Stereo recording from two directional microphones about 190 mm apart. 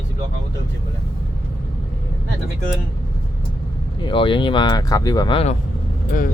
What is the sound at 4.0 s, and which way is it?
Speech, 25° left (ahead or behind).